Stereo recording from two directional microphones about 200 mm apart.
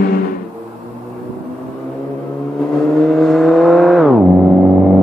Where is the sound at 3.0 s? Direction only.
Centre (ahead or behind).